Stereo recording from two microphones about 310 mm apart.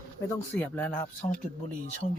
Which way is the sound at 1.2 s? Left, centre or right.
Centre.